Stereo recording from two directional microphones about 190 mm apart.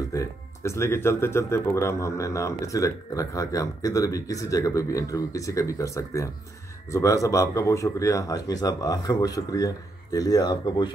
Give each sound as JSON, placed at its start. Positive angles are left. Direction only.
{"t": 0.1, "sound": "speech", "side_deg": 15}